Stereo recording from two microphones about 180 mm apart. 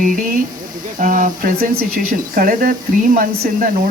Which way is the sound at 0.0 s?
50° right (ahead or behind).